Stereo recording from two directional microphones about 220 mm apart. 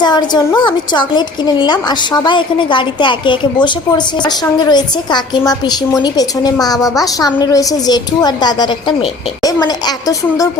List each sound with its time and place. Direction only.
0.0 s a woman's voice: 20° left (ahead or behind)